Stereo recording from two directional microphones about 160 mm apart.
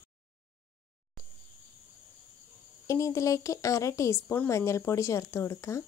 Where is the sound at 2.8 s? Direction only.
20° left (ahead or behind).